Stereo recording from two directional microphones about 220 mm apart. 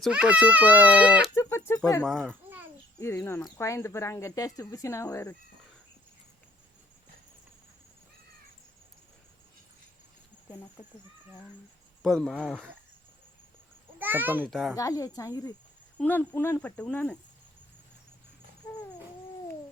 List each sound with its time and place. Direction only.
0.0 s speech: 5° right (ahead or behind)
1.4 s speech: 10° left (ahead or behind)
2.0 s a sound: centre (ahead or behind)
3.0 s speech: 10° left (ahead or behind)
12.0 s speech: centre (ahead or behind)
14.0 s a child's voice: 10° right (ahead or behind)
14.8 s speech: 15° left (ahead or behind)
18.6 s a sound: 15° left (ahead or behind)